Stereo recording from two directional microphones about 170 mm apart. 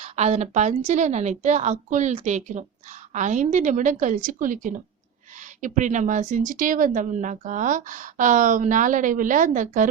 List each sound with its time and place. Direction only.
0.0 s speech: 40° right (ahead or behind)